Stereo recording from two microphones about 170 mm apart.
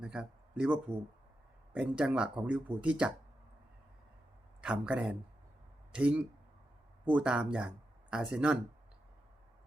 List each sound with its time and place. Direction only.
0.0 s speech: 5° right (ahead or behind)
4.6 s speech: 5° right (ahead or behind)